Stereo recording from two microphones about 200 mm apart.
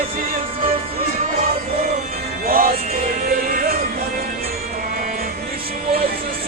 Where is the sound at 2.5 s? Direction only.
45° right (ahead or behind).